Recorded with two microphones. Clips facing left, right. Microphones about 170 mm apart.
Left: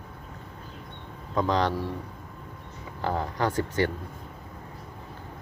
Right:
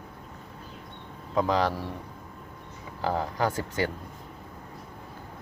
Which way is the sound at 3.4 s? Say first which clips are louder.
Left 4 dB; 10° right (ahead or behind).